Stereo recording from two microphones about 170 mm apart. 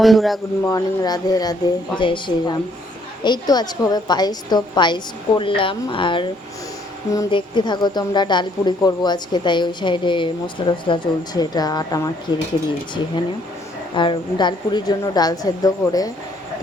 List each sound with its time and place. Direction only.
0.0 s a man's voice: centre (ahead or behind)
0.6 s a woman's voice: 20° left (ahead or behind)
13.9 s a woman's voice: 30° left (ahead or behind)